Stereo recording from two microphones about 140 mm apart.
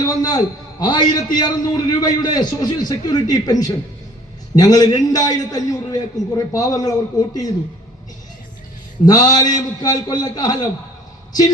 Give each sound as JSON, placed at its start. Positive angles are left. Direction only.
{"t": 0.0, "sound": "a man's voice", "side_deg": 25}
{"t": 9.0, "sound": "a man's voice", "side_deg": 25}